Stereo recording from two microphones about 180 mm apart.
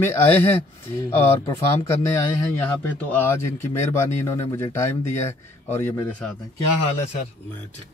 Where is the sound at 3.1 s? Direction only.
15° left (ahead or behind).